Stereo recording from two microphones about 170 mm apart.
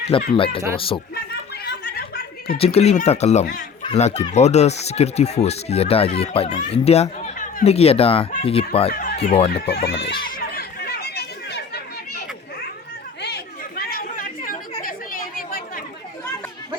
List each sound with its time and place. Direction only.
0.3 s speech: 30° left (ahead or behind)
1.1 s a sound: 70° left (ahead or behind)
2.6 s speech: 35° left (ahead or behind)
3.4 s speech: 55° left (ahead or behind)
3.8 s speech: 40° left (ahead or behind)
8.9 s a sound: 65° left (ahead or behind)
9.2 s speech: 35° left (ahead or behind)
9.6 s speech: 75° left (ahead or behind)
10.2 s chatter: 60° left (ahead or behind); by 11.8 s 80° left
13.2 s chatter: 65° left (ahead or behind)